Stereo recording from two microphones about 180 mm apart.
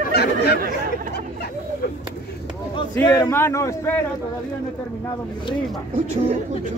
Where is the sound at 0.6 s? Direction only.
50° right (ahead or behind).